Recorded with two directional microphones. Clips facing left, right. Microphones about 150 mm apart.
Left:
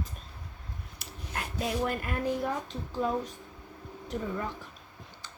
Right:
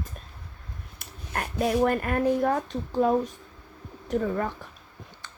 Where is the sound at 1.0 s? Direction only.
55° right (ahead or behind).